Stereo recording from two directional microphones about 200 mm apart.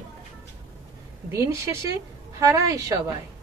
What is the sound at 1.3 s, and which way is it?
A woman's voice, 15° right (ahead or behind).